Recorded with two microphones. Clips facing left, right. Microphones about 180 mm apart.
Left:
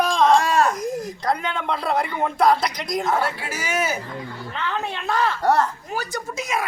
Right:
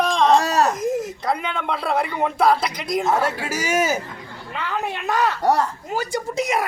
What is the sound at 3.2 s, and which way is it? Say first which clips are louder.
Speech: right 4 dB; 45° right (ahead or behind).